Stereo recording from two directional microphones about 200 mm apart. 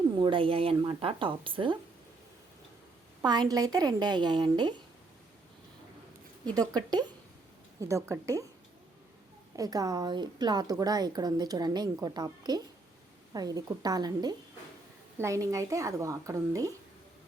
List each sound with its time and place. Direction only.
0.2 s speech: 25° right (ahead or behind)
3.2 s speech: 20° right (ahead or behind)
6.6 s speech: 20° right (ahead or behind)
9.6 s speech: 20° right (ahead or behind)